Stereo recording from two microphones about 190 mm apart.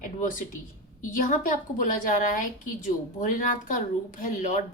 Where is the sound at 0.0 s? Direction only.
45° left (ahead or behind).